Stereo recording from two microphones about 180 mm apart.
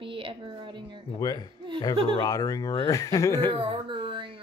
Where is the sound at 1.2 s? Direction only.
20° left (ahead or behind).